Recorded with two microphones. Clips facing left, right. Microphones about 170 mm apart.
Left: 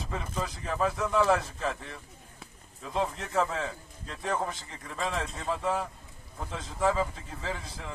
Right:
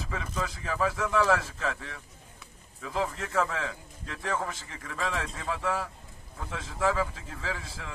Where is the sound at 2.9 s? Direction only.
25° left (ahead or behind).